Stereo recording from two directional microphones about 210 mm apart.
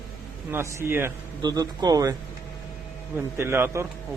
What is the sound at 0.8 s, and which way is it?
A man's voice, 10° right (ahead or behind).